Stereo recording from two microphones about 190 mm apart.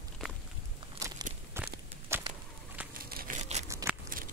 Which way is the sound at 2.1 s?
15° right (ahead or behind).